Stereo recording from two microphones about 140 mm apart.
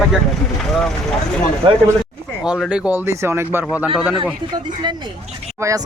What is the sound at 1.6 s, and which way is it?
Speech, 35° right (ahead or behind).